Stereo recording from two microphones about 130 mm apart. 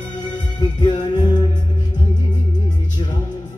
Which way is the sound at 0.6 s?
35° left (ahead or behind).